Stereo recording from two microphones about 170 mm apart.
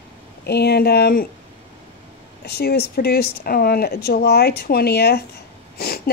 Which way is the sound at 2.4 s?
70° left (ahead or behind).